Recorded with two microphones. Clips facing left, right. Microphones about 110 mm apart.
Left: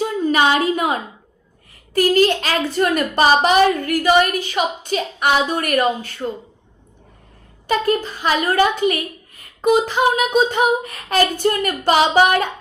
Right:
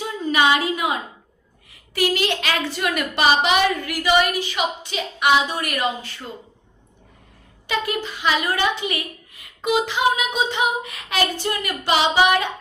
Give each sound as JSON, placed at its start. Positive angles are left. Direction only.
{"t": 0.0, "sound": "a sound", "side_deg": 40}
{"t": 1.9, "sound": "a woman's voice", "side_deg": 45}
{"t": 7.7, "sound": "a woman's voice", "side_deg": 40}